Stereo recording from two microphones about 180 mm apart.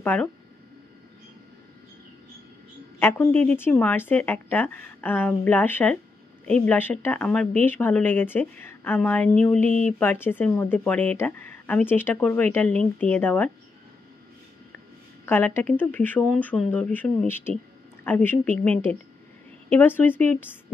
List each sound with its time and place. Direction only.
0.0 s speech: 10° left (ahead or behind)
3.0 s a woman's voice: 10° left (ahead or behind)
15.2 s a woman's voice: 10° left (ahead or behind)